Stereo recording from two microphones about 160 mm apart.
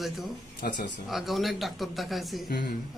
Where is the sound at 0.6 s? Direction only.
65° left (ahead or behind).